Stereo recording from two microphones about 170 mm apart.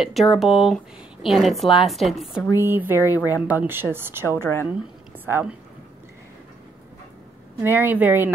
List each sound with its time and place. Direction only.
0.0 s speech: centre (ahead or behind)
2.5 s speech: 15° right (ahead or behind)
3.0 s speech: 15° left (ahead or behind)
3.4 s speech: 10° right (ahead or behind)
5.1 s a sound: 10° right (ahead or behind)
7.6 s speech: 10° right (ahead or behind)